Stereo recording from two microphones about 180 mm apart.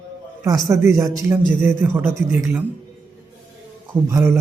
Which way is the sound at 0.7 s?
15° right (ahead or behind).